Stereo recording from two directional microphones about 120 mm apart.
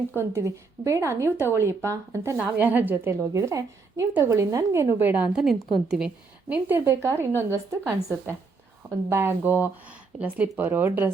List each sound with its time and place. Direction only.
0.2 s a woman's voice: 25° right (ahead or behind); by 6.1 s 5° right (ahead or behind)
6.5 s a woman's voice: 15° right (ahead or behind)